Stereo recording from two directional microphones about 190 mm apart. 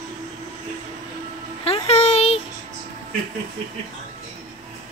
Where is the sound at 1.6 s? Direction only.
30° left (ahead or behind).